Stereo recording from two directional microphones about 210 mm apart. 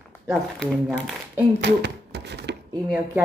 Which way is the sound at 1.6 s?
55° right (ahead or behind).